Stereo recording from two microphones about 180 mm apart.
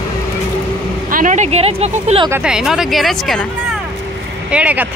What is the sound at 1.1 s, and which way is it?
Speech, 45° right (ahead or behind).